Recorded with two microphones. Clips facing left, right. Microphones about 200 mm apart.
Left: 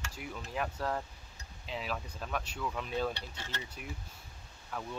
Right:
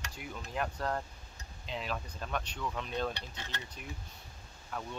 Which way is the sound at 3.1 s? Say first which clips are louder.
Left 1 dB; 15° right (ahead or behind).